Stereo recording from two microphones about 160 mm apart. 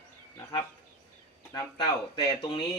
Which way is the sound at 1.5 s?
30° left (ahead or behind).